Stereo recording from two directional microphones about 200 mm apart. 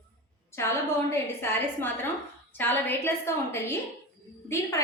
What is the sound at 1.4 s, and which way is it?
A woman's voice, 10° left (ahead or behind).